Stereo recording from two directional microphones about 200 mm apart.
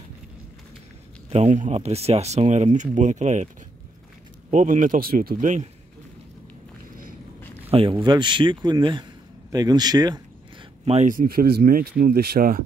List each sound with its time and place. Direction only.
1.3 s speech: 35° right (ahead or behind)
4.5 s speech: 40° right (ahead or behind)
7.7 s speech: 25° right (ahead or behind)
10.9 s speech: 40° right (ahead or behind)